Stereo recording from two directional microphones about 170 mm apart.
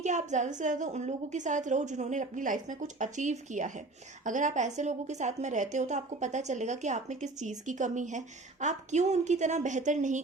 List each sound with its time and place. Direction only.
0.0 s a woman's voice: 45° right (ahead or behind)